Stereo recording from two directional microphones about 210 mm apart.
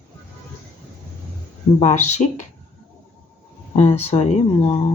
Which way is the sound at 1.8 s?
30° left (ahead or behind).